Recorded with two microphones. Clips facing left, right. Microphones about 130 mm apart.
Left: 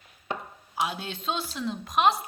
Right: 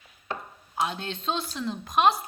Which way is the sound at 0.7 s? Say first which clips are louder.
Right 1 dB; 5° left (ahead or behind).